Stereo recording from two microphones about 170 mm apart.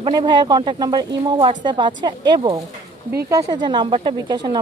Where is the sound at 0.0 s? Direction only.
30° right (ahead or behind).